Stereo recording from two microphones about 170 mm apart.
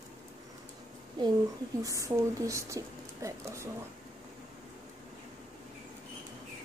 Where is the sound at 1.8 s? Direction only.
20° right (ahead or behind).